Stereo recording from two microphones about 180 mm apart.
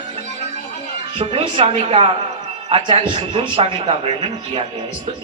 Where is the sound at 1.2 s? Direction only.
30° right (ahead or behind).